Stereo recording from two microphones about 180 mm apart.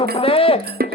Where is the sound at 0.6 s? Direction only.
60° right (ahead or behind).